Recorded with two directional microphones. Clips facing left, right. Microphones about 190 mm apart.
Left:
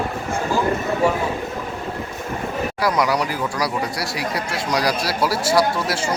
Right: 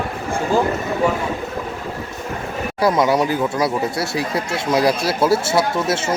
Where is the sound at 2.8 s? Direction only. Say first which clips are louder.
Right 5 dB; 25° right (ahead or behind).